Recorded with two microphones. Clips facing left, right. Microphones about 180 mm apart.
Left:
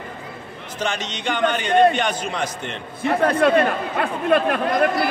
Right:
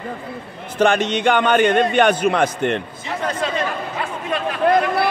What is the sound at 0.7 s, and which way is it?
A man's voice, 55° right (ahead or behind).